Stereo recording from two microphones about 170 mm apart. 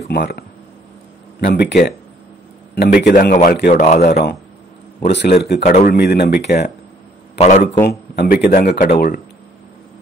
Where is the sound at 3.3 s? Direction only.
45° left (ahead or behind).